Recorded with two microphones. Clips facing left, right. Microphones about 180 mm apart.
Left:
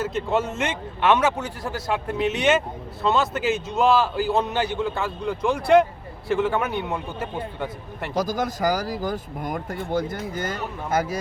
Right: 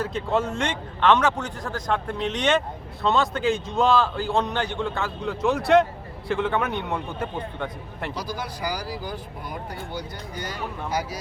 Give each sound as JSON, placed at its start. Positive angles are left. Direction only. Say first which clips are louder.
{"t": 0.0, "sound": "a man's voice", "louder": "left 1 dB", "side_deg": 0}
{"t": 8.1, "sound": "speech", "louder": "left 11 dB", "side_deg": 45}